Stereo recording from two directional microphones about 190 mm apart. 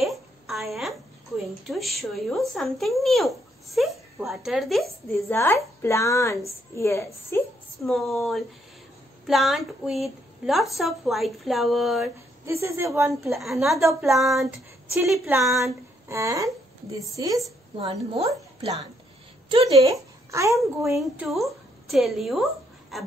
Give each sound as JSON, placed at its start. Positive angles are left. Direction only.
{"t": 0.0, "sound": "a sound", "side_deg": 0}
{"t": 1.7, "sound": "speech", "side_deg": 0}
{"t": 5.1, "sound": "a woman's voice", "side_deg": 10}
{"t": 7.8, "sound": "speech", "side_deg": 0}
{"t": 12.4, "sound": "speech", "side_deg": -15}
{"t": 13.1, "sound": "speech", "side_deg": 0}
{"t": 15.2, "sound": "a woman's voice", "side_deg": -15}
{"t": 17.7, "sound": "a woman's voice", "side_deg": -30}
{"t": 19.7, "sound": "speech", "side_deg": -15}
{"t": 20.9, "sound": "a woman's voice", "side_deg": 0}